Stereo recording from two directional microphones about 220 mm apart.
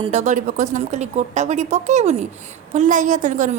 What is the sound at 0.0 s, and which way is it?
A woman's voice, 30° right (ahead or behind).